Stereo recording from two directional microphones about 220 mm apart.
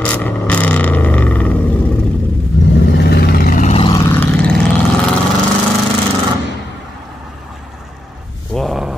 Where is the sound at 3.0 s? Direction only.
45° left (ahead or behind).